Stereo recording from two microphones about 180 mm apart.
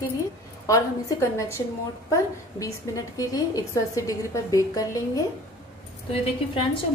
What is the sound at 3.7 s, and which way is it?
A woman's voice, 15° left (ahead or behind).